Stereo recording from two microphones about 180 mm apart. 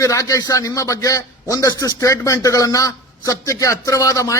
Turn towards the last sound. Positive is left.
turn(degrees=20)  # may be behind; listen again after turning